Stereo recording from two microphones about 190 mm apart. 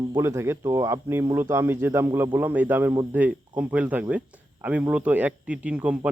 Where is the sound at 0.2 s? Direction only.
15° right (ahead or behind).